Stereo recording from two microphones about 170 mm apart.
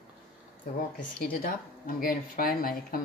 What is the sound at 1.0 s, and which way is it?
Speech, 60° left (ahead or behind).